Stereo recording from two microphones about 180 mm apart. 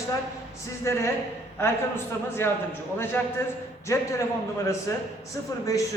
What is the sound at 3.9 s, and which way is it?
Speech, 15° left (ahead or behind).